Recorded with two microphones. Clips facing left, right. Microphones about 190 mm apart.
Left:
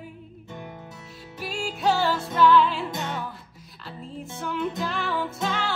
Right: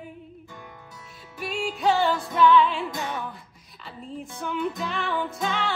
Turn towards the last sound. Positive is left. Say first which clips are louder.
# even
turn(degrees=0)  # may be behind; listen again after turning